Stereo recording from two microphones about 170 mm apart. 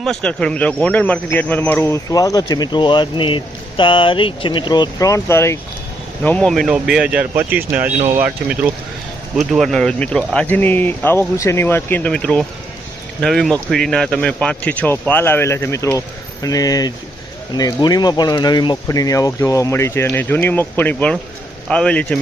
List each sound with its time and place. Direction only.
0.0 s speech: 5° left (ahead or behind)
9.5 s speech: centre (ahead or behind)